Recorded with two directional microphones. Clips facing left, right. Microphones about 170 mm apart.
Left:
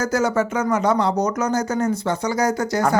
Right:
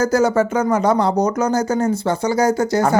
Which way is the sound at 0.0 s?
35° right (ahead or behind).